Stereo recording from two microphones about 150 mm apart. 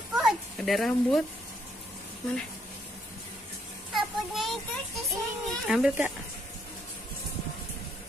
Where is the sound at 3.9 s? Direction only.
Centre (ahead or behind).